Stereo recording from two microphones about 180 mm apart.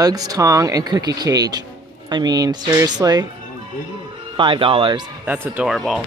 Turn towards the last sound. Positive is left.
turn(degrees=0)  # may be behind; listen again after turning